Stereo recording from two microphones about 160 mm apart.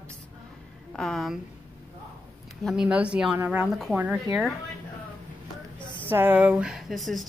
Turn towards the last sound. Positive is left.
turn(degrees=0)  # may be behind; listen again after turning